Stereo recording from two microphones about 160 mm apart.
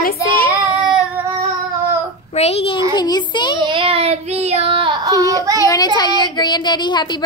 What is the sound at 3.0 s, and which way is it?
Speech, 25° left (ahead or behind).